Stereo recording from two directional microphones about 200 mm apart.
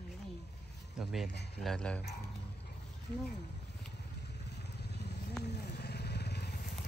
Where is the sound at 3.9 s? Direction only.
55° left (ahead or behind).